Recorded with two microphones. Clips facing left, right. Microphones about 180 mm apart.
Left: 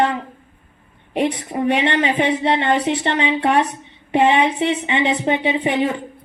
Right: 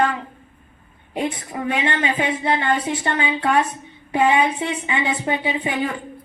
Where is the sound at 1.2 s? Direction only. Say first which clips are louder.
Left 5 dB; 25° left (ahead or behind).